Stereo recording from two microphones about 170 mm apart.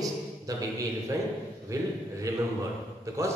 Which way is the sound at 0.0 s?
20° right (ahead or behind).